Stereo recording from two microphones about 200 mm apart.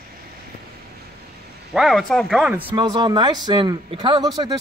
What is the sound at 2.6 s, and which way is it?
Speech, 20° right (ahead or behind).